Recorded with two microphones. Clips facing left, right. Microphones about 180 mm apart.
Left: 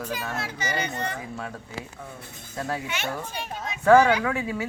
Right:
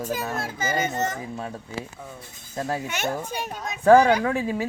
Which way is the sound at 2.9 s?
45° right (ahead or behind).